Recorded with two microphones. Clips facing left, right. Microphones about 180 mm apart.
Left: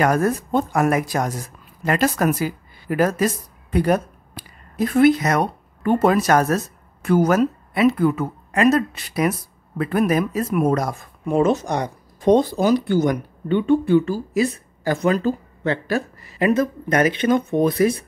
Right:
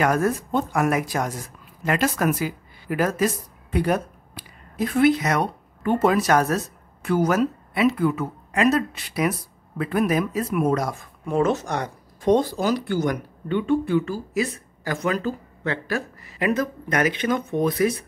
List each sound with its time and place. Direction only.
0.0 s a woman's voice: 40° left (ahead or behind)
3.7 s a sound: 40° left (ahead or behind)
6.0 s a man's voice: 45° left (ahead or behind)
11.2 s speech: 15° left (ahead or behind)